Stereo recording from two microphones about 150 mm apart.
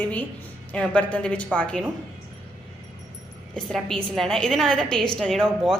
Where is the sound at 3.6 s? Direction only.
5° left (ahead or behind).